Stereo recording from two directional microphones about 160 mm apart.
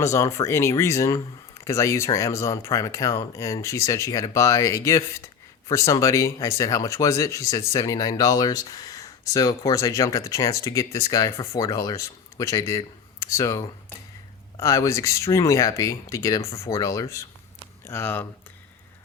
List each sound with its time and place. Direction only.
0.0 s speech: 20° left (ahead or behind)